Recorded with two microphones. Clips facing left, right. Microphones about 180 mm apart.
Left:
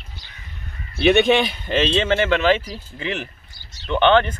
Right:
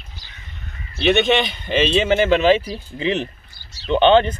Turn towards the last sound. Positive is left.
turn(degrees=-20)  # may be behind; listen again after turning